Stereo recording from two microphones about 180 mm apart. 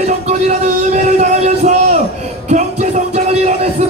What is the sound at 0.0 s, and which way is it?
Music, 40° right (ahead or behind).